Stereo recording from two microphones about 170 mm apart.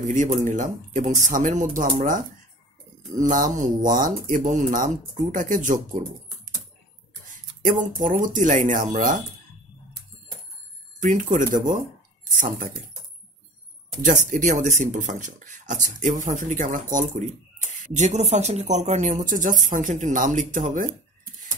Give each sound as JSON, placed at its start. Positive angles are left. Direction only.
{"t": 0.0, "sound": "speech", "side_deg": -45}
{"t": 3.3, "sound": "speech", "side_deg": -50}
{"t": 7.6, "sound": "speech", "side_deg": -50}
{"t": 11.0, "sound": "speech", "side_deg": -50}
{"t": 14.0, "sound": "speech", "side_deg": -45}